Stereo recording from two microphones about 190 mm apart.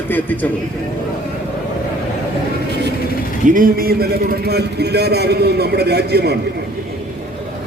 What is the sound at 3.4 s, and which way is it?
A man's voice, 45° right (ahead or behind).